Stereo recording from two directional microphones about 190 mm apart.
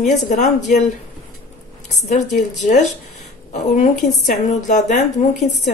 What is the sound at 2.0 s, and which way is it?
A woman's voice, 40° left (ahead or behind).